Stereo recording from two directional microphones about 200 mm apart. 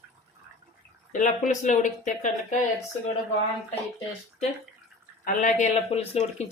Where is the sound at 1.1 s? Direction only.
40° left (ahead or behind).